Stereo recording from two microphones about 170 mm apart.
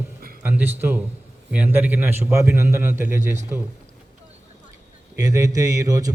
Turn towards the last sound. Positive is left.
turn(degrees=-20)  # may be behind; listen again after turning